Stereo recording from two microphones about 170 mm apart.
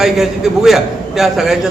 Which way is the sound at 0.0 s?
Centre (ahead or behind).